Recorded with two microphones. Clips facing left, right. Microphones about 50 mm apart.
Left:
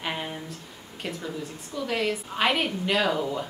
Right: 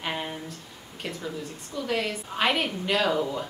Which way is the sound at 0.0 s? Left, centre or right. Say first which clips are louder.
Even; centre.